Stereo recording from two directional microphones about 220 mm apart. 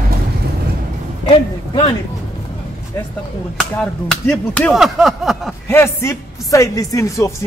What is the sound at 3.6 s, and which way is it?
Speech, 5° left (ahead or behind).